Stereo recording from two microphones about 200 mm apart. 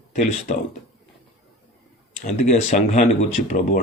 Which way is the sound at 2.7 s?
40° left (ahead or behind).